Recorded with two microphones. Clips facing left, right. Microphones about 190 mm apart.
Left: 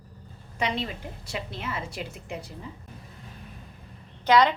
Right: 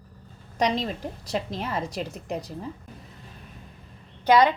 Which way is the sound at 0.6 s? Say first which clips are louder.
Right 5 dB; 40° right (ahead or behind).